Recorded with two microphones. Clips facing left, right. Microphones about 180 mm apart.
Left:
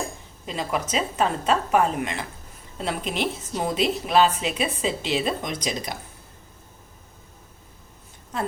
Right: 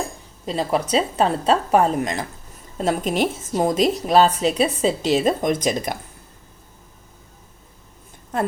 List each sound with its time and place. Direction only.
0.4 s a woman's voice: 35° right (ahead or behind); by 6.0 s 50° right (ahead or behind)